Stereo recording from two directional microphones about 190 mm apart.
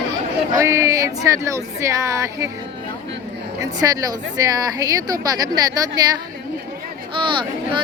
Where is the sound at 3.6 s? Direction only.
15° right (ahead or behind).